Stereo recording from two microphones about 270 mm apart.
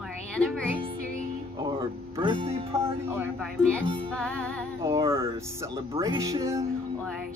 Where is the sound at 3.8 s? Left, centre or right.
Centre.